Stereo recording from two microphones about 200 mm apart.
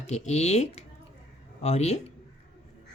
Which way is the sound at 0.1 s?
35° left (ahead or behind).